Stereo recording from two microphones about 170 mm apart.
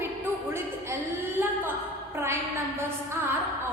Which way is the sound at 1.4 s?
15° right (ahead or behind).